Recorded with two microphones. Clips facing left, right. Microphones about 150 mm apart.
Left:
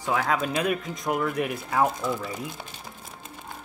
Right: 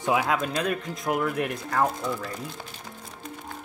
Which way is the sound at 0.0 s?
15° right (ahead or behind).